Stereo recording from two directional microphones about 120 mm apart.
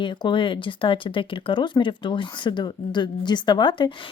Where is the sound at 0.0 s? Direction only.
40° left (ahead or behind).